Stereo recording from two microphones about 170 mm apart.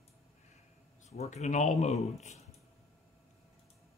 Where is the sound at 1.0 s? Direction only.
40° left (ahead or behind).